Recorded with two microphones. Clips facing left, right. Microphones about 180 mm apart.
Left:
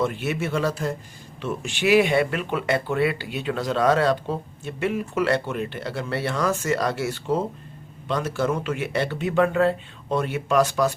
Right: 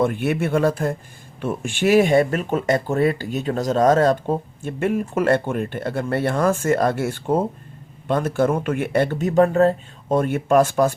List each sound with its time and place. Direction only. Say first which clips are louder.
0.0 s speech: right 5 dB; 55° right (ahead or behind)